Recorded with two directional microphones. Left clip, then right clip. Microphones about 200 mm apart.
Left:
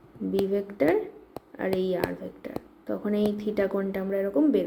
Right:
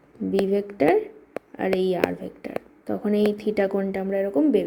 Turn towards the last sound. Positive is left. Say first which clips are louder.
# right 3 dB
turn(degrees=-25)  # may be behind; listen again after turning